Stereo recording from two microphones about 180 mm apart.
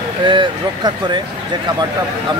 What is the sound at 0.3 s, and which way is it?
Speech, 25° right (ahead or behind).